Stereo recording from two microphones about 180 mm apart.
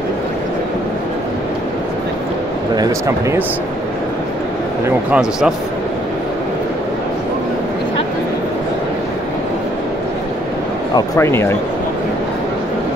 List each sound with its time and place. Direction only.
2.7 s speech: 20° right (ahead or behind)
4.8 s speech: 5° right (ahead or behind)
11.0 s speech: 15° left (ahead or behind)